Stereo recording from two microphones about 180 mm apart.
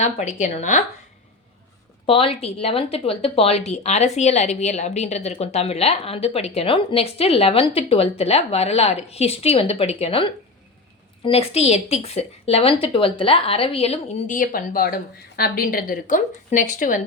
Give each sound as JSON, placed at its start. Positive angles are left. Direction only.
{"t": 0.0, "sound": "speech", "side_deg": 40}
{"t": 2.0, "sound": "speech", "side_deg": 30}
{"t": 14.3, "sound": "a woman's voice", "side_deg": 50}